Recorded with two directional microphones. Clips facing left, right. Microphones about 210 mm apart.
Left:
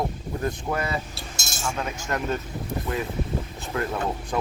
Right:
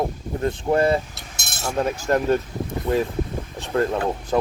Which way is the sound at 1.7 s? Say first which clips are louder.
Right 11 dB; 35° right (ahead or behind).